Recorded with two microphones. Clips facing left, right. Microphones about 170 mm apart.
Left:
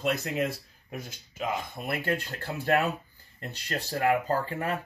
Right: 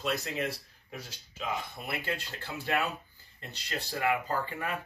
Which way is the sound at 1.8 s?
50° left (ahead or behind).